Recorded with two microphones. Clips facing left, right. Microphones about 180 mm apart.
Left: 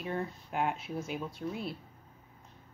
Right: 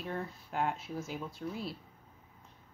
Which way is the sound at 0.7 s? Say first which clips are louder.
Left 2 dB; 65° left (ahead or behind).